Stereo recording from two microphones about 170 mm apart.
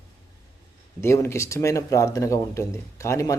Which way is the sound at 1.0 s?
15° left (ahead or behind).